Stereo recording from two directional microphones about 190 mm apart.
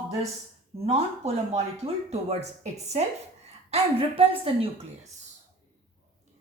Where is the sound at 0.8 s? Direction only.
30° right (ahead or behind).